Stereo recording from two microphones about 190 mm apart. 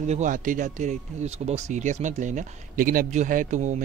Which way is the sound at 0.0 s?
40° right (ahead or behind).